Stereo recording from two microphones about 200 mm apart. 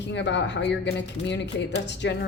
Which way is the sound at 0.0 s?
60° left (ahead or behind).